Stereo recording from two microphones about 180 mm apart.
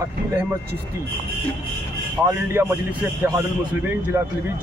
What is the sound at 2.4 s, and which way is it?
Speech, 10° right (ahead or behind).